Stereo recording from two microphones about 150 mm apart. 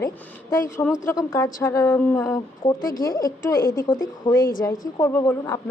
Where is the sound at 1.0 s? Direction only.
20° left (ahead or behind).